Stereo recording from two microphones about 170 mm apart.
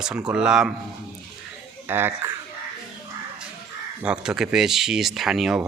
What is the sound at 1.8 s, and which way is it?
Speech, 10° right (ahead or behind).